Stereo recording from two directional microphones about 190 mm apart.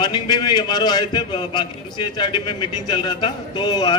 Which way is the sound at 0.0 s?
20° left (ahead or behind).